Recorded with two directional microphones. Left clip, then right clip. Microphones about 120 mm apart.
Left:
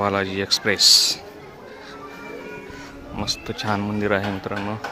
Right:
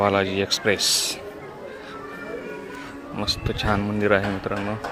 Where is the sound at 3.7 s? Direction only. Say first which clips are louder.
Right 2 dB; 20° left (ahead or behind).